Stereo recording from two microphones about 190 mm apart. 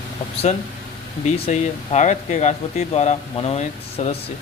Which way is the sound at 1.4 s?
40° left (ahead or behind).